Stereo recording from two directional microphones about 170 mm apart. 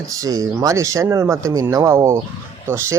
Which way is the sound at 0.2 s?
20° right (ahead or behind).